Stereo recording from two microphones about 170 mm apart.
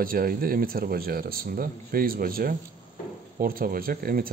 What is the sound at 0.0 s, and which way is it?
Speech, 55° right (ahead or behind).